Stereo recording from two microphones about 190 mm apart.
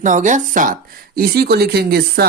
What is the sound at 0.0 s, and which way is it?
Speech, 40° right (ahead or behind).